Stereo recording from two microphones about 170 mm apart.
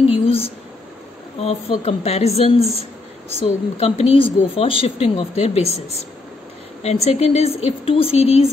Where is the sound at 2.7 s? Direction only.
40° right (ahead or behind).